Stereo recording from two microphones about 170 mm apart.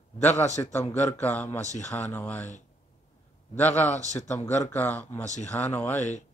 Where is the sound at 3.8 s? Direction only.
45° left (ahead or behind).